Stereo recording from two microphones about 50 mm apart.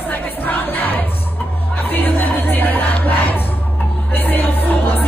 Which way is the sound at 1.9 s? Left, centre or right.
Left.